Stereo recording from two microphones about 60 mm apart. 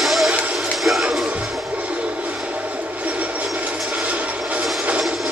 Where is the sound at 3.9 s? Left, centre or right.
Right.